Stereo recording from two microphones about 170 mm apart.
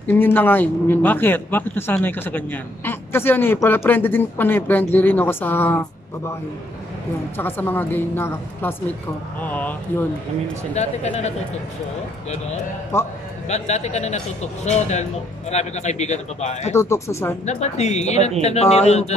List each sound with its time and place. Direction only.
0.0 s a man's voice: 10° left (ahead or behind)
7.3 s a man's voice: 10° left (ahead or behind)
10.7 s speech: 40° left (ahead or behind)
12.9 s a man's voice: 15° left (ahead or behind)
13.5 s speech: 40° left (ahead or behind)
16.7 s a man's voice: 15° left (ahead or behind)
17.5 s speech: 40° left (ahead or behind)